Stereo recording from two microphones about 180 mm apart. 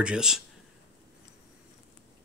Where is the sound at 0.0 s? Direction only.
5° right (ahead or behind).